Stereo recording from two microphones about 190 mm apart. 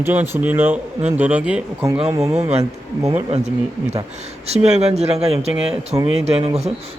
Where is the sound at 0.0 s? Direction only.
10° right (ahead or behind).